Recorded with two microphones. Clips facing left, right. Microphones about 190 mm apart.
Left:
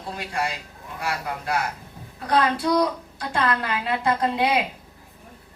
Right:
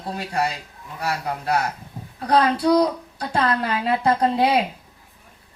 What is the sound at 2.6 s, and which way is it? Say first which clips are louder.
A woman's voice: right 4 dB; 35° right (ahead or behind).